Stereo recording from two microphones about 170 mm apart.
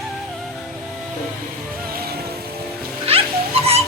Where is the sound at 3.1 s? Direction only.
35° right (ahead or behind).